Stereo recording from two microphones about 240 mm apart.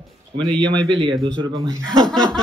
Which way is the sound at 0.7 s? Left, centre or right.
Centre.